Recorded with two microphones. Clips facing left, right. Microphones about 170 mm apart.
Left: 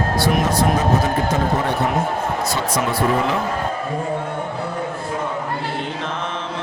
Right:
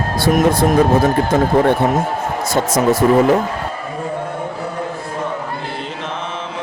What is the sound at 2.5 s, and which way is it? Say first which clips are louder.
Speech: right 6 dB; 45° right (ahead or behind).